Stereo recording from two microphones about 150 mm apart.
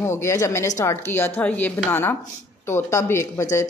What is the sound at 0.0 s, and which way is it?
A woman's voice, 20° left (ahead or behind).